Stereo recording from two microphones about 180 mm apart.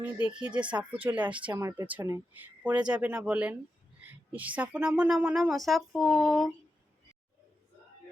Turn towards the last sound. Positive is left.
turn(degrees=0)  # may be behind; listen again after turning